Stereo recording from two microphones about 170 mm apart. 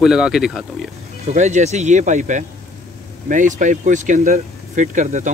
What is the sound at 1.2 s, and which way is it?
Speech, 45° right (ahead or behind).